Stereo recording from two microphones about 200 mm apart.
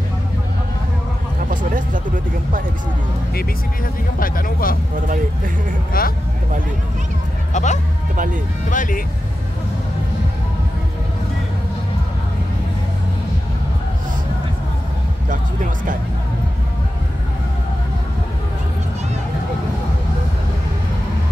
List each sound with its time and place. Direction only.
4.2 s a sound: 45° left (ahead or behind)
5.9 s vehicle: 45° left (ahead or behind)
7.5 s music: 35° left (ahead or behind)